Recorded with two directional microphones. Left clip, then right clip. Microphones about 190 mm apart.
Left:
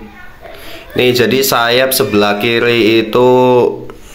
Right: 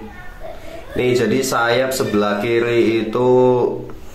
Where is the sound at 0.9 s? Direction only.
45° left (ahead or behind).